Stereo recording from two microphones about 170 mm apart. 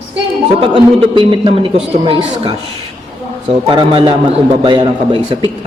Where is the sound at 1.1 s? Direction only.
30° right (ahead or behind).